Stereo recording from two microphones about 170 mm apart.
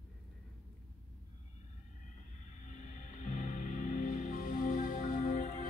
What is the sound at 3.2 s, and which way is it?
Music, 45° left (ahead or behind).